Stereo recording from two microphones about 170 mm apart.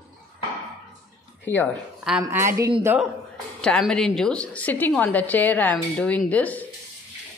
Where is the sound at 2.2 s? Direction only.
15° right (ahead or behind).